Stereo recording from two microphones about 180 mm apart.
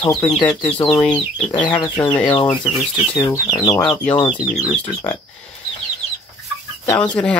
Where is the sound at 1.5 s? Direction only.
25° left (ahead or behind).